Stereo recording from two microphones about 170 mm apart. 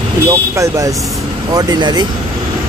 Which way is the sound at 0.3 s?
20° right (ahead or behind).